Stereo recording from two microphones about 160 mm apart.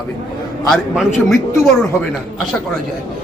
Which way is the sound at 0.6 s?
Centre (ahead or behind).